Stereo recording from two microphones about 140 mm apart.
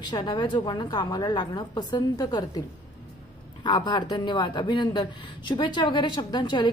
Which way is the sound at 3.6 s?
30° left (ahead or behind).